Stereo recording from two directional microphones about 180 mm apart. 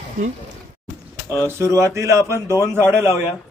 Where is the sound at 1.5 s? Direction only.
15° right (ahead or behind).